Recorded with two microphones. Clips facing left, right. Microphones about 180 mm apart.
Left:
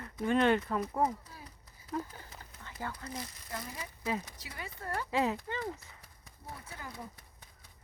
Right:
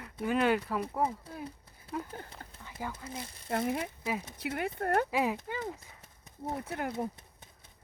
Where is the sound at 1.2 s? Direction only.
55° right (ahead or behind).